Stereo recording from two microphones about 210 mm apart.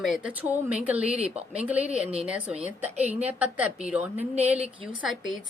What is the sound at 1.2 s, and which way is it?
Speech, 30° right (ahead or behind).